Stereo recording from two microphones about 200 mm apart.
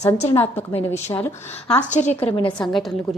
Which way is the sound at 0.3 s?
10° left (ahead or behind).